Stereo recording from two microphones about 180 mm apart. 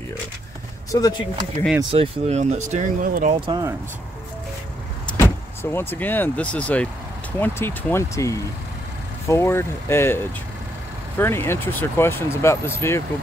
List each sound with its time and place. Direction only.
0.9 s speech: 20° left (ahead or behind)
1.8 s speech: 30° right (ahead or behind)
3.3 s speech: 25° right (ahead or behind)
5.0 s speech: 15° left (ahead or behind)